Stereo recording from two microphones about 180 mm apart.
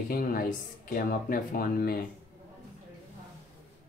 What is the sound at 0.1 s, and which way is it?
Speech, 50° left (ahead or behind).